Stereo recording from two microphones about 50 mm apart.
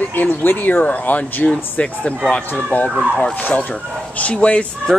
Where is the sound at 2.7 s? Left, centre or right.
Left.